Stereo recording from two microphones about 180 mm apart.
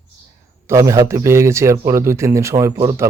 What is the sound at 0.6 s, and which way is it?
A man's voice, 15° right (ahead or behind).